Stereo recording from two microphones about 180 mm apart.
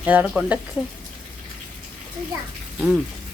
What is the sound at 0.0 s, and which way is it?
Speech, 10° right (ahead or behind).